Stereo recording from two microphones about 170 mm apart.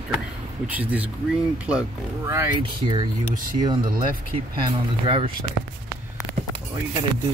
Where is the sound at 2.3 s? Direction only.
20° right (ahead or behind).